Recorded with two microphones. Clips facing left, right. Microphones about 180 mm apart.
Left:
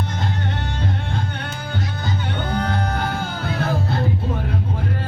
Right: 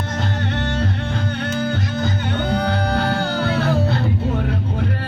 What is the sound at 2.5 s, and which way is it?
Music, 70° right (ahead or behind).